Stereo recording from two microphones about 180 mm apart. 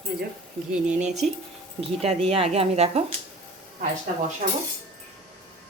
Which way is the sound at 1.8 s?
35° right (ahead or behind).